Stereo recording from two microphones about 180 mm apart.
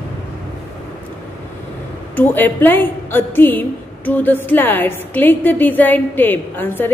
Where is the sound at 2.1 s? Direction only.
10° left (ahead or behind).